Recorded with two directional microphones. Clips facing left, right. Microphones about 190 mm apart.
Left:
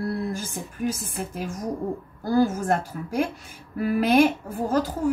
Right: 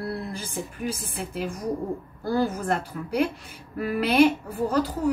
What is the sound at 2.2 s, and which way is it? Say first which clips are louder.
A woman's voice: left 3 dB; 50° left (ahead or behind).